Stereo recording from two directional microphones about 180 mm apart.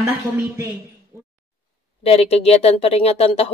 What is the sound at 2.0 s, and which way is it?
Speech, 35° left (ahead or behind).